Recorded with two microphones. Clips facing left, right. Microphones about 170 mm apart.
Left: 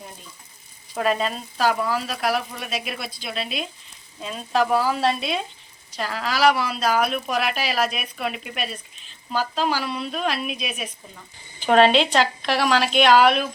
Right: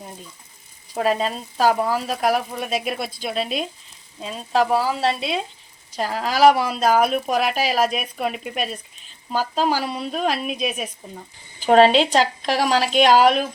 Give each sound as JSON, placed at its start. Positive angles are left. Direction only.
{"t": 0.9, "sound": "speech", "side_deg": -30}
{"t": 4.2, "sound": "speech", "side_deg": -30}
{"t": 6.0, "sound": "speech", "side_deg": -45}